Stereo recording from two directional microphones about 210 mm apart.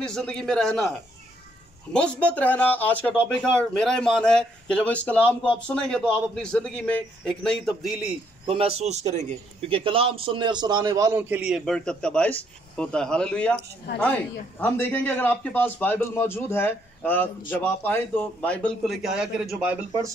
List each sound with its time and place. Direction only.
0.0 s speech: 5° left (ahead or behind)
2.0 s speech: 5° left (ahead or behind)
8.5 s a man's voice: 30° right (ahead or behind); by 13.6 s 5° left (ahead or behind)
13.9 s a woman's voice: 55° left (ahead or behind)
14.6 s a man's voice: 10° left (ahead or behind); by 20.2 s 15° right (ahead or behind)